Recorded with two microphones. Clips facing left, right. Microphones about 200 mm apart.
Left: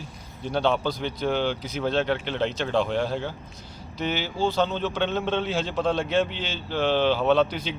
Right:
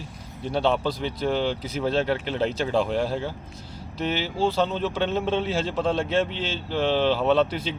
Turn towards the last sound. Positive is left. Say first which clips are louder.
# even
turn(degrees=0)  # may be behind; listen again after turning